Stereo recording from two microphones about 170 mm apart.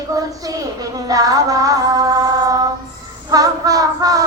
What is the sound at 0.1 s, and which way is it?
Speech, 20° right (ahead or behind).